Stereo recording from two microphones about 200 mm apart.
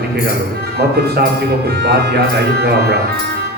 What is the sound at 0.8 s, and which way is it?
Speech, 55° right (ahead or behind).